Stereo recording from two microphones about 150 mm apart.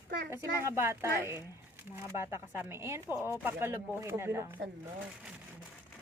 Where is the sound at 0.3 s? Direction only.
15° right (ahead or behind).